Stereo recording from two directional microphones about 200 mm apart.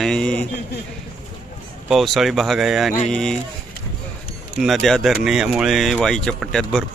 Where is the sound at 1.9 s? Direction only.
Centre (ahead or behind).